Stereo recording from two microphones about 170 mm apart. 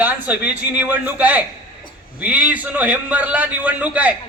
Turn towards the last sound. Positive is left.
turn(degrees=-10)  # may be behind; listen again after turning